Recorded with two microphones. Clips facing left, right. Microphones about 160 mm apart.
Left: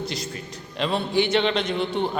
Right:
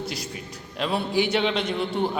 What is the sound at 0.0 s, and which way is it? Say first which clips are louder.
A man's voice: left 2 dB; 10° right (ahead or behind).